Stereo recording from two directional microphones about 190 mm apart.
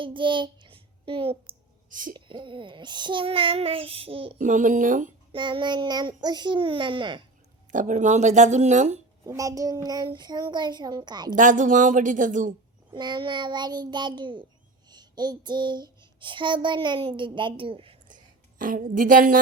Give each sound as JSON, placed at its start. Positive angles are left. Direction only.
{"t": 0.0, "sound": "child singing", "side_deg": -25}
{"t": 1.9, "sound": "speech", "side_deg": -45}
{"t": 2.1, "sound": "a child's voice", "side_deg": -25}
{"t": 4.4, "sound": "speech", "side_deg": -45}
{"t": 5.3, "sound": "a child's voice", "side_deg": -25}
{"t": 7.7, "sound": "speech", "side_deg": -40}
{"t": 9.2, "sound": "a child's voice", "side_deg": -15}
{"t": 11.3, "sound": "speech", "side_deg": -45}
{"t": 12.9, "sound": "a child's voice", "side_deg": -25}
{"t": 14.8, "sound": "child singing", "side_deg": -20}
{"t": 18.6, "sound": "speech", "side_deg": -45}